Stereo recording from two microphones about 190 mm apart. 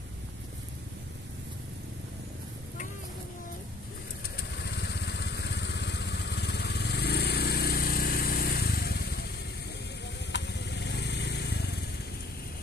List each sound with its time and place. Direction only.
4.4 s vehicle: 60° left (ahead or behind)
10.3 s vehicle: 65° left (ahead or behind)